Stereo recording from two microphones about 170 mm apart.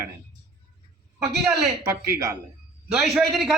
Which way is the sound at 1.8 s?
15° right (ahead or behind).